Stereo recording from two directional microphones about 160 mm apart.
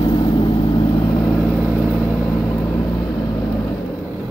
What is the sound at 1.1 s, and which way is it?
Vehicle, 10° left (ahead or behind).